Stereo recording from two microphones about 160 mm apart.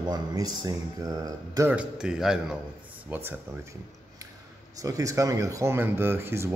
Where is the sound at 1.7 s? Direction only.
5° right (ahead or behind).